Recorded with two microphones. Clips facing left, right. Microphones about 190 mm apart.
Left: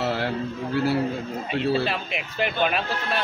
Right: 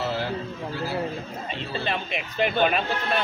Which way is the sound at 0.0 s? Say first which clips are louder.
Left 2 dB; 65° left (ahead or behind).